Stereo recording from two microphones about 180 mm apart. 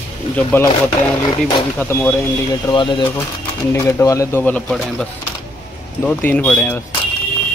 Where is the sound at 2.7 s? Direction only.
25° left (ahead or behind).